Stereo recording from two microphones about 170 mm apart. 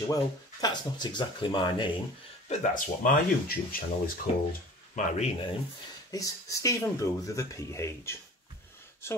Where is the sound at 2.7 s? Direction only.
50° left (ahead or behind).